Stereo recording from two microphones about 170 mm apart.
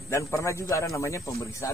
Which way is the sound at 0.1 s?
15° left (ahead or behind).